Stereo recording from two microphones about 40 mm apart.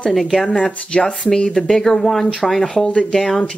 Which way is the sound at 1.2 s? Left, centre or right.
Centre.